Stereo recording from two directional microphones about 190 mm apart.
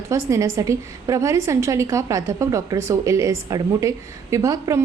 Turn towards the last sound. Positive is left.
turn(degrees=-15)  # may be behind; listen again after turning